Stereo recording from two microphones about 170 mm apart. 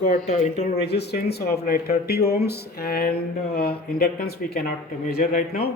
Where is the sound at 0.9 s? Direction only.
75° left (ahead or behind).